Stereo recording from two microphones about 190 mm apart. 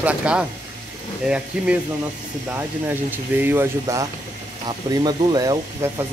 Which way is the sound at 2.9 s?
10° right (ahead or behind).